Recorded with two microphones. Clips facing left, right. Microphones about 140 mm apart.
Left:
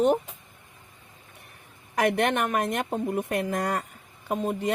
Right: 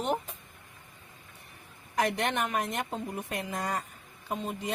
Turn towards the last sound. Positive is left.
turn(degrees=55)  # may be behind; listen again after turning